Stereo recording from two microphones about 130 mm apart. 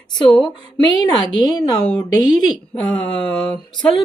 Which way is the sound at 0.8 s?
30° left (ahead or behind).